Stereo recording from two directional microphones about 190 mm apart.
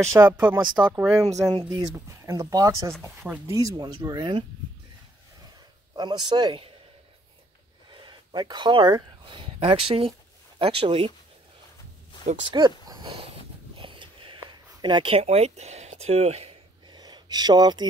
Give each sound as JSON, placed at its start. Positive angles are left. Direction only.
{"t": 0.0, "sound": "speech", "side_deg": -15}
{"t": 1.3, "sound": "speech", "side_deg": -20}
{"t": 5.9, "sound": "speech", "side_deg": -25}
{"t": 8.0, "sound": "speech", "side_deg": -25}
{"t": 12.5, "sound": "speech", "side_deg": -20}
{"t": 13.7, "sound": "a sound", "side_deg": -25}